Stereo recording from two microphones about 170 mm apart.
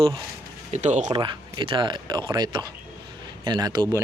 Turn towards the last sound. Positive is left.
turn(degrees=-25)  # may be behind; listen again after turning